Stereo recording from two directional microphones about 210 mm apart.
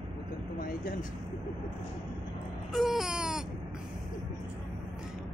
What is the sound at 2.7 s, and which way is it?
Baby cry, centre (ahead or behind).